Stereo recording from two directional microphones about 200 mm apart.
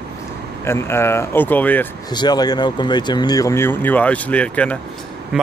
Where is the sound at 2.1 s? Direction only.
20° left (ahead or behind).